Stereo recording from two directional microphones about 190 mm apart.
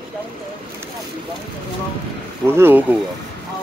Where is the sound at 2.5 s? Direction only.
10° right (ahead or behind).